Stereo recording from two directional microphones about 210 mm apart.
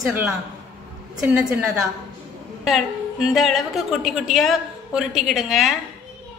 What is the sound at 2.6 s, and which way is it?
A woman's voice, centre (ahead or behind).